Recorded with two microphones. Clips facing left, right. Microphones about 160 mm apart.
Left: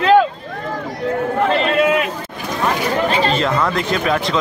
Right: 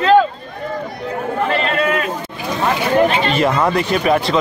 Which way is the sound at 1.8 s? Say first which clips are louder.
Left 3 dB; 15° left (ahead or behind).